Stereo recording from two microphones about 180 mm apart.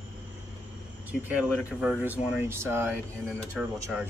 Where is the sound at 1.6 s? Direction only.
5° right (ahead or behind).